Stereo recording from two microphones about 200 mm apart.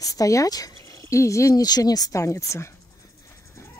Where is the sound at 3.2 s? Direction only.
15° left (ahead or behind).